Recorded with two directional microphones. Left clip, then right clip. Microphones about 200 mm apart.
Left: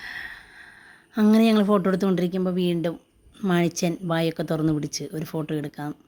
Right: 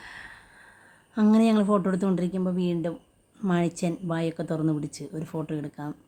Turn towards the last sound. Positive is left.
turn(degrees=15)  # may be behind; listen again after turning